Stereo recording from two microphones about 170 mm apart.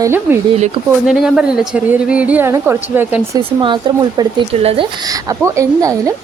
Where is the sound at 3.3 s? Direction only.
30° right (ahead or behind).